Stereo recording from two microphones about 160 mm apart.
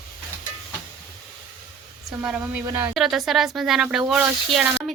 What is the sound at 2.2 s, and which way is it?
Speech, 10° right (ahead or behind).